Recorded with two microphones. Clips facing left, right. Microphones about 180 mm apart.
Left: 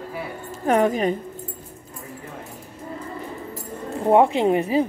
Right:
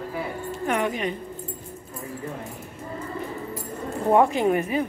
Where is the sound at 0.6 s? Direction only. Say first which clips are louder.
Left 7 dB; 40° left (ahead or behind).